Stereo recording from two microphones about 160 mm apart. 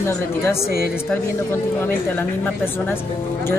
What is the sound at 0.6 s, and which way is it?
Speech, 70° left (ahead or behind).